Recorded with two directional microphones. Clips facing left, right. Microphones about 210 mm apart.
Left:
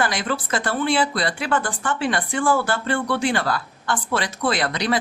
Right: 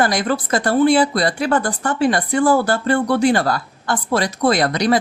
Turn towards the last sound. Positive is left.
turn(degrees=-40)  # may be behind; listen again after turning